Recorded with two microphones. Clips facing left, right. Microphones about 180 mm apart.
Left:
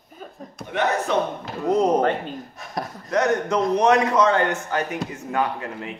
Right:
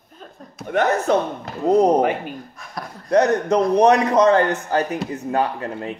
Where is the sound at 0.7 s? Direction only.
50° right (ahead or behind).